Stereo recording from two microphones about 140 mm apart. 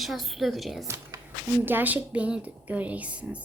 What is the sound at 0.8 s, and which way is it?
A woman's voice, 20° right (ahead or behind).